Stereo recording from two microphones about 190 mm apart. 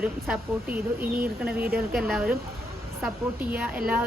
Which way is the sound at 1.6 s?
55° right (ahead or behind).